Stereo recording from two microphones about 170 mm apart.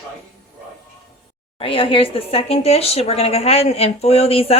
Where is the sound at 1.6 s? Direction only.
30° left (ahead or behind).